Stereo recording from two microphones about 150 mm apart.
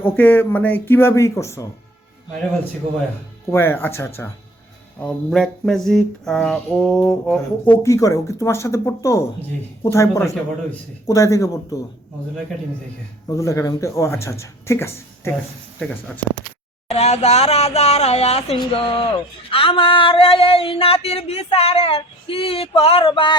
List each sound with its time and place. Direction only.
0.0 s speech: 10° left (ahead or behind)
3.5 s speech: 15° left (ahead or behind)
4.9 s speech: 5° left (ahead or behind); by 11.8 s 20° left (ahead or behind)
13.2 s speech: 20° left (ahead or behind)
16.9 s speech: 45° left (ahead or behind)
18.6 s a sound: 35° left (ahead or behind)